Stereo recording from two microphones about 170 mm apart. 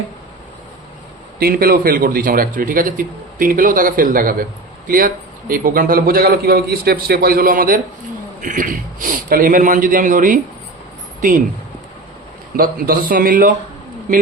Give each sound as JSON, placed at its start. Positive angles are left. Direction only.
{"t": 1.4, "sound": "a man's voice", "side_deg": -60}
{"t": 12.5, "sound": "a man's voice", "side_deg": -60}